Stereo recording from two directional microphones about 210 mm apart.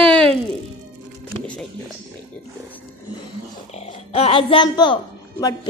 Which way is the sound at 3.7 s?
30° left (ahead or behind).